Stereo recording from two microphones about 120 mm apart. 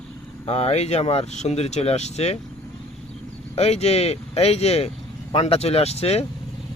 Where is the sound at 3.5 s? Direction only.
60° left (ahead or behind).